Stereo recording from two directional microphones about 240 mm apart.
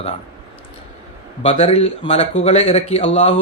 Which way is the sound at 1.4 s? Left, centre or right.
Left.